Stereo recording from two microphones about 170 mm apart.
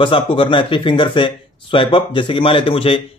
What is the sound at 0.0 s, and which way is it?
Speech, 30° left (ahead or behind).